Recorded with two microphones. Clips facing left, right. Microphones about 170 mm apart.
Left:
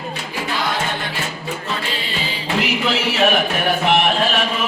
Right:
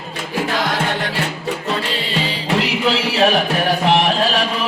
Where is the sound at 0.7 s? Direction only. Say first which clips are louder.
Right 3 dB; 80° right.